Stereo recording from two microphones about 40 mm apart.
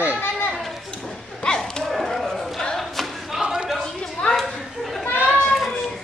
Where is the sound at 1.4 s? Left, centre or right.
Centre.